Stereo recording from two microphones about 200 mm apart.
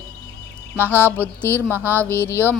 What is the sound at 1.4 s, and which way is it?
Speech, 10° left (ahead or behind).